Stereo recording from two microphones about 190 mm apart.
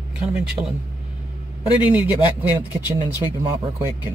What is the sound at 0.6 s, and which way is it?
Speech, 20° right (ahead or behind).